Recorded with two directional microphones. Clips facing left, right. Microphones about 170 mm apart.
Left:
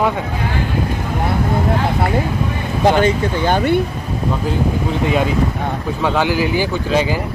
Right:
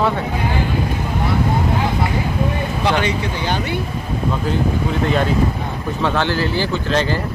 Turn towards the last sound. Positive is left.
turn(degrees=10)  # may be behind; listen again after turning